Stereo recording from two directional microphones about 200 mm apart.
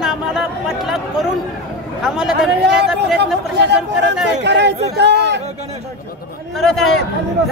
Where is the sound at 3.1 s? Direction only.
55° right (ahead or behind).